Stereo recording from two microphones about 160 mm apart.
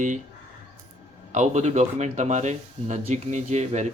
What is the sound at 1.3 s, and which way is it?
Speech, 50° right (ahead or behind).